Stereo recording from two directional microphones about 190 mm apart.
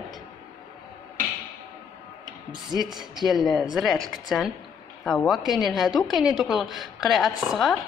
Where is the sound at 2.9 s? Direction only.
20° right (ahead or behind).